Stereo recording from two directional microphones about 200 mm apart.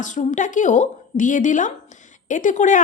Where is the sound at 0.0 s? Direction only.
40° left (ahead or behind).